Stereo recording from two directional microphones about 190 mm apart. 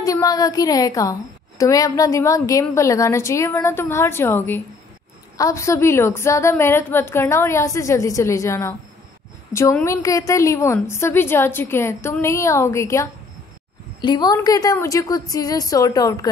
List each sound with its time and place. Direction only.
0.0 s a woman's voice: 20° left (ahead or behind)